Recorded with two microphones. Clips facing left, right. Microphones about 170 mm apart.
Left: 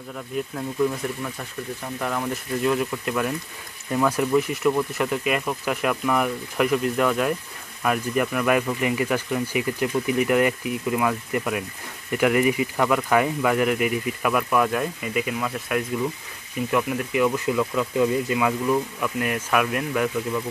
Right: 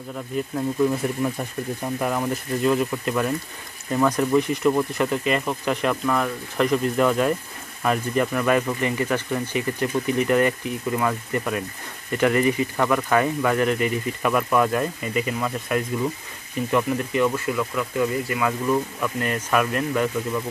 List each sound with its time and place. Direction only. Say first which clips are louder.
2.0 s speech: right 2 dB; 10° right (ahead or behind)
2.6 s speech: right 2 dB; centre (ahead or behind)
17.5 s speech: left 2 dB; 20° left (ahead or behind)
18.7 s speech: even; 5° left (ahead or behind)